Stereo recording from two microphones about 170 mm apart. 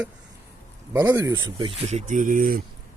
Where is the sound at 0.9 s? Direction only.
20° right (ahead or behind).